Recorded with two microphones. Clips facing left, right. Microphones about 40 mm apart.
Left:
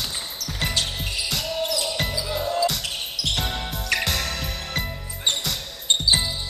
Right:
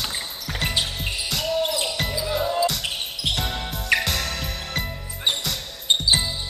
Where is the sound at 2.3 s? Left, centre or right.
Centre.